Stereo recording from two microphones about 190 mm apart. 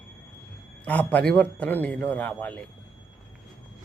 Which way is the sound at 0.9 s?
5° left (ahead or behind).